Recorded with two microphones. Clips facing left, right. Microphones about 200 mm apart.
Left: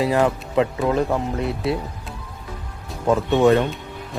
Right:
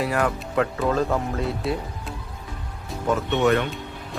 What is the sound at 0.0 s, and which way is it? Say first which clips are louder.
Speech: left 5 dB; 25° left (ahead or behind).